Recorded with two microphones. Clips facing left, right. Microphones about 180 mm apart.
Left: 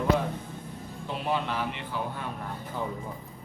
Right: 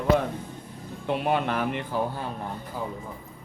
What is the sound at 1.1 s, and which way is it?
Speech, 60° right (ahead or behind).